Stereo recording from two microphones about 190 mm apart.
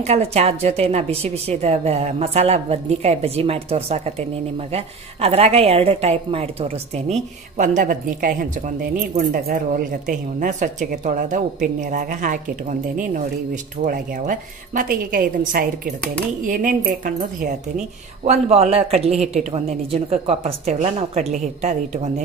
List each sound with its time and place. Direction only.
0.0 s a woman's voice: 35° right (ahead or behind)
13.8 s a woman's voice: 45° right (ahead or behind)
18.2 s a woman's voice: 35° right (ahead or behind)